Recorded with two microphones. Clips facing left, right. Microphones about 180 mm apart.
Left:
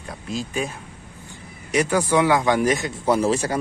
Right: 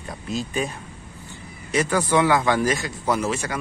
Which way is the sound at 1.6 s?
15° left (ahead or behind).